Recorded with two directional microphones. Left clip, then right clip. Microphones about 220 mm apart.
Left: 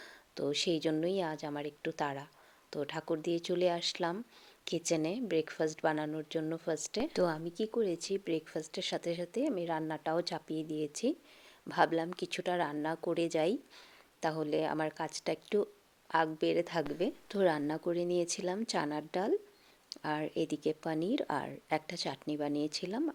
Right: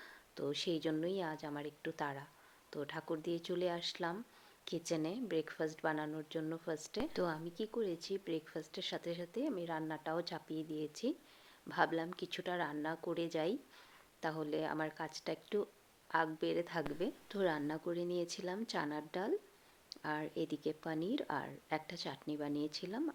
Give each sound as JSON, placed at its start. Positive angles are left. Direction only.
{"t": 0.0, "sound": "a woman's voice", "side_deg": 30}